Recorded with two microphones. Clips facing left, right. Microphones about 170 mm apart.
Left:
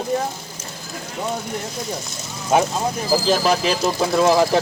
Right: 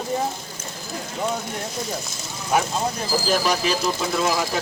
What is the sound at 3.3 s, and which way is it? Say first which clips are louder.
Speech: left 2 dB; 30° left (ahead or behind).